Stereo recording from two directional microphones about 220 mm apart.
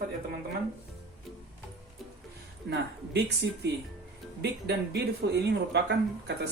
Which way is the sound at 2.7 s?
50° right (ahead or behind).